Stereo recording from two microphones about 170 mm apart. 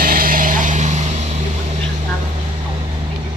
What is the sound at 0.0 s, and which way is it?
Vehicle, 55° right (ahead or behind).